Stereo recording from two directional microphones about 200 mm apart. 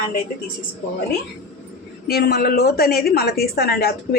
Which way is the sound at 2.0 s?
50° left (ahead or behind).